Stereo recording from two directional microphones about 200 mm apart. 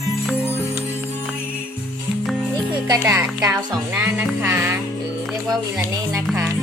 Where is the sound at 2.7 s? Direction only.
15° right (ahead or behind).